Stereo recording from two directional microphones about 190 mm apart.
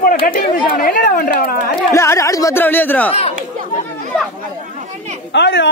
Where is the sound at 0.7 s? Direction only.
50° left (ahead or behind).